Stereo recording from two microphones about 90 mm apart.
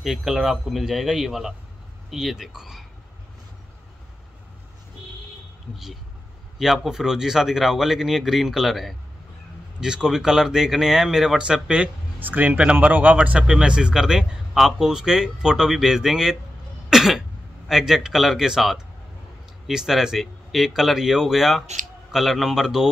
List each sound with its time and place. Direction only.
0.0 s speech: 5° right (ahead or behind)
6.6 s a man's voice: 5° right (ahead or behind)